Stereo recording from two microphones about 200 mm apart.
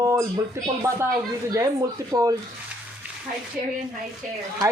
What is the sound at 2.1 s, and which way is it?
Speech, 20° right (ahead or behind).